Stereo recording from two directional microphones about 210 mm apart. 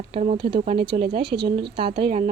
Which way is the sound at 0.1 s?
30° right (ahead or behind).